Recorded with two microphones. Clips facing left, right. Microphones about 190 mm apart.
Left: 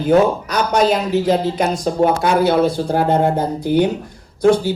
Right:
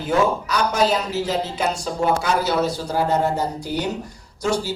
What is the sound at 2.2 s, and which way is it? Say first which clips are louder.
Speech: left 6 dB; 60° left (ahead or behind).